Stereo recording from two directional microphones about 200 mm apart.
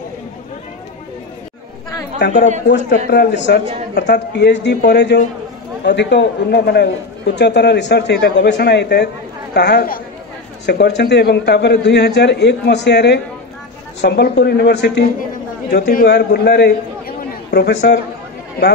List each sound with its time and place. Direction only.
3.1 s speech: 55° left (ahead or behind)